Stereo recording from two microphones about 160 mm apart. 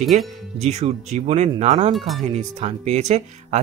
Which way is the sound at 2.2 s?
45° right (ahead or behind).